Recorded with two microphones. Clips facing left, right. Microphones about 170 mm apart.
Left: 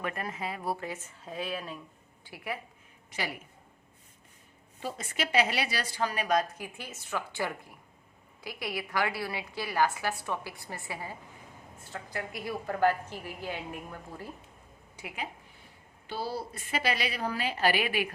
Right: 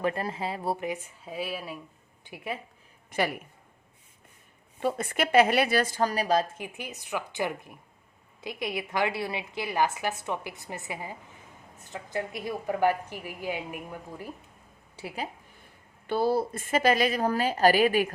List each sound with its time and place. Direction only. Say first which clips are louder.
0.0 s a woman's voice: right 6 dB; 30° right (ahead or behind); by 1.8 s 10° right (ahead or behind)
2.2 s speech: right 2 dB; 20° right (ahead or behind)
3.1 s a woman's voice: right 8 dB; 55° right (ahead or behind)
4.8 s a woman's voice: right 7 dB; 60° right (ahead or behind); by 6.7 s 30° right (ahead or behind)
6.7 s a woman's voice: right 2 dB; 15° right (ahead or behind)
14.9 s speech: right 4 dB; 35° right (ahead or behind)
16.0 s a woman's voice: right 10 dB; 55° right (ahead or behind)